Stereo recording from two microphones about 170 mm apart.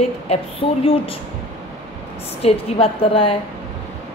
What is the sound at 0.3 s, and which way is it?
Speech, 35° left (ahead or behind).